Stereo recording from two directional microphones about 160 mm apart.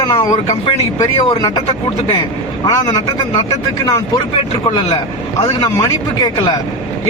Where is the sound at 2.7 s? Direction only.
25° left (ahead or behind).